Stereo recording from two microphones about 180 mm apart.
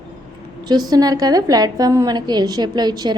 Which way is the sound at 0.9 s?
20° right (ahead or behind).